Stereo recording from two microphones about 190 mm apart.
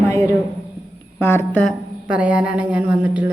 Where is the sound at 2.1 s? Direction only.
5° right (ahead or behind).